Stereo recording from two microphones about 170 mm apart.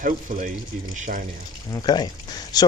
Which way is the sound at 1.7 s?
25° left (ahead or behind).